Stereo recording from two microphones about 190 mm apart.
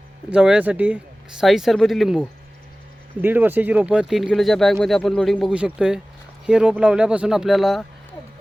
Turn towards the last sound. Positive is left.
turn(degrees=0)  # may be behind; listen again after turning